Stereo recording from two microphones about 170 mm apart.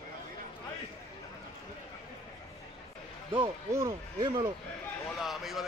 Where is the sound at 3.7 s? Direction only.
15° right (ahead or behind).